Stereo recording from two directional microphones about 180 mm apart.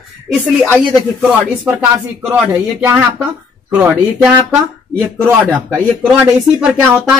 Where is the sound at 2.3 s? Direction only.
10° right (ahead or behind).